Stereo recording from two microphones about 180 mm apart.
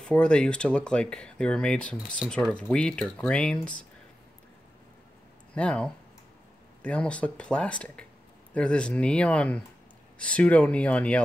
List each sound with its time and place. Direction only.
0.0 s speech: 5° left (ahead or behind)
5.5 s speech: 5° left (ahead or behind)